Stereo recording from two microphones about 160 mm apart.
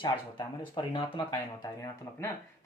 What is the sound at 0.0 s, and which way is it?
Speech, 30° left (ahead or behind).